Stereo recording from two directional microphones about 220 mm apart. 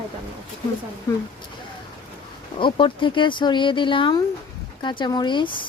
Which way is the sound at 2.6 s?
20° left (ahead or behind).